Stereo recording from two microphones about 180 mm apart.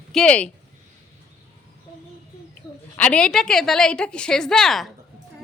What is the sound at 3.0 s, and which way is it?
A woman's voice, 5° left (ahead or behind).